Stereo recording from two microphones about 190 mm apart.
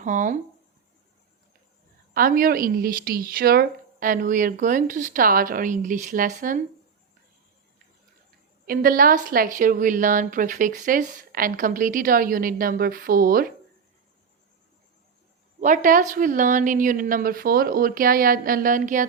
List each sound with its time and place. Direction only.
0.0 s speech: 40° right (ahead or behind)
2.1 s a woman's voice: 50° right (ahead or behind)
8.6 s a woman's voice: 50° right (ahead or behind)
15.6 s a woman's voice: 45° right (ahead or behind)